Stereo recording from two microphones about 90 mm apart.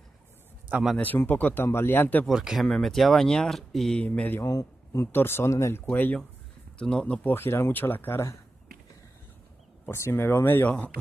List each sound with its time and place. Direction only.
0.9 s speech: 20° left (ahead or behind)
2.2 s speech: 5° right (ahead or behind)
4.0 s mantra: 15° left (ahead or behind)
4.4 s a man's voice: 35° left (ahead or behind)
5.0 s speech: 25° left (ahead or behind)
6.8 s mantra: 10° left (ahead or behind)
7.2 s speech: 25° left (ahead or behind)
9.8 s speech: 30° left (ahead or behind)